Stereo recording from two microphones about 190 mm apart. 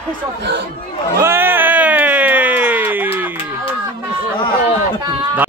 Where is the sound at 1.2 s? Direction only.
10° right (ahead or behind).